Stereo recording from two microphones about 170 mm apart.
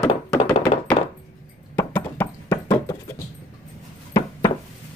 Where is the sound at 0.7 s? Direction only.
45° left (ahead or behind).